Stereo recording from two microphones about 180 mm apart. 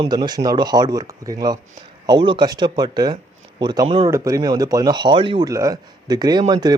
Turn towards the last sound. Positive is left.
turn(degrees=-25)  # may be behind; listen again after turning